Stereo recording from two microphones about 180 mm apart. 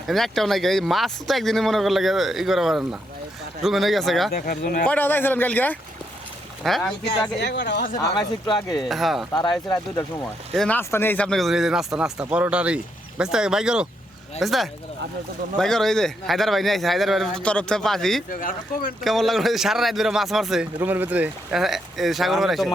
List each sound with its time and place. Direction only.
0.1 s speech: centre (ahead or behind)
4.3 s speech: 55° left (ahead or behind)
4.9 s a man's voice: 10° left (ahead or behind)
7.1 s speech: 75° left (ahead or behind)
8.5 s speech: centre (ahead or behind)
9.6 s speech: 20° left (ahead or behind)
10.5 s speech: 5° left (ahead or behind)
18.3 s speech: 50° left (ahead or behind)
19.0 s speech: centre (ahead or behind)